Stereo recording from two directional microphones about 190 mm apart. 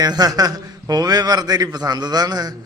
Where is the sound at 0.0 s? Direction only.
20° right (ahead or behind).